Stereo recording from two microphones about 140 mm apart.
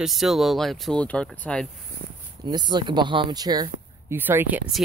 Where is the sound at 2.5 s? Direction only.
30° right (ahead or behind).